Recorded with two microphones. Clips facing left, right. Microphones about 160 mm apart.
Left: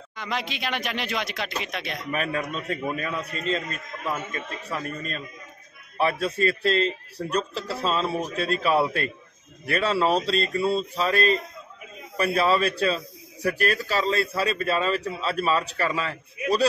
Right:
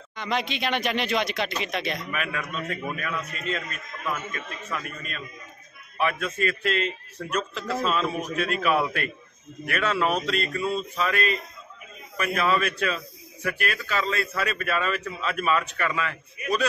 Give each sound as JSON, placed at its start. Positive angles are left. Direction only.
{"t": 0.1, "sound": "speech", "side_deg": 5}
{"t": 2.0, "sound": "a man's voice", "side_deg": 35}